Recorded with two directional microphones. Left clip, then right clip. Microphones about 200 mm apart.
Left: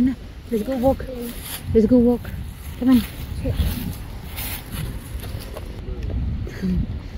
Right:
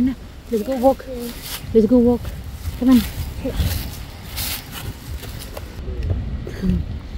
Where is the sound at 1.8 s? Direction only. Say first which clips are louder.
Right 2 dB; 5° left (ahead or behind).